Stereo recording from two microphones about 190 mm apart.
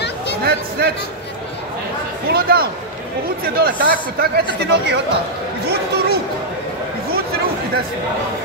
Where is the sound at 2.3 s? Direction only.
55° right (ahead or behind).